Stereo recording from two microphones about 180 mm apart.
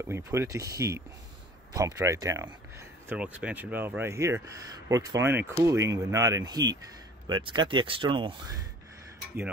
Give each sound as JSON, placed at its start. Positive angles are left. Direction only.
{"t": 0.0, "sound": "speech", "side_deg": -15}
{"t": 3.1, "sound": "speech", "side_deg": -5}